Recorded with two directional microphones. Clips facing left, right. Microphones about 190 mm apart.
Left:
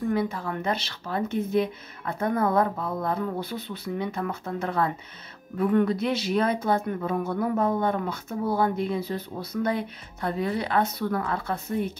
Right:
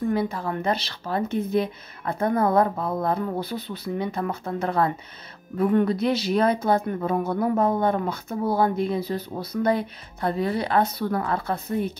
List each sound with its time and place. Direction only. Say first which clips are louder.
0.1 s speech: right 2 dB; 35° right (ahead or behind)